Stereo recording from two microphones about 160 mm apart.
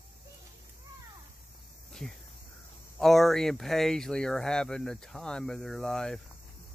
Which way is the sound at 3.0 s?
Centre (ahead or behind).